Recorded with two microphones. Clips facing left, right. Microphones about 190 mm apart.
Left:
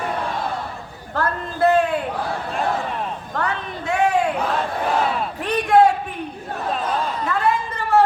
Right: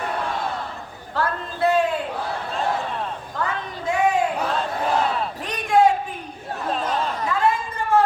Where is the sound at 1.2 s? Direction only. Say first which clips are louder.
Left 3 dB; 55° left (ahead or behind).